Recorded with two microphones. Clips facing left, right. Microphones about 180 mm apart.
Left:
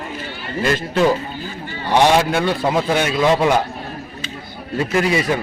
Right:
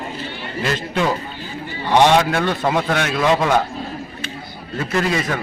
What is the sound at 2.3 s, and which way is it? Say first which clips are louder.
Speech: left 1 dB; 5° left (ahead or behind).